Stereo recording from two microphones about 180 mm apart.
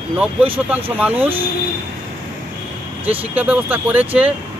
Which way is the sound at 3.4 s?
10° right (ahead or behind).